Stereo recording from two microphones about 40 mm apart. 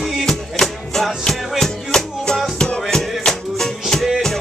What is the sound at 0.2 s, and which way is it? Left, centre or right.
Music, centre.